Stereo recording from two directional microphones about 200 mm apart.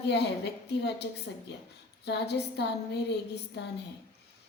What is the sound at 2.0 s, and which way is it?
A woman's voice, 55° left (ahead or behind).